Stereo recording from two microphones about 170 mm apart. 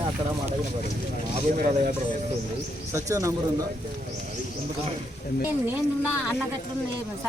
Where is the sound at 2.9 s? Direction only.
20° right (ahead or behind).